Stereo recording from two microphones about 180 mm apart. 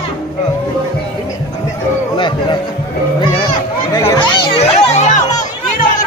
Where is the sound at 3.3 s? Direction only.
25° left (ahead or behind).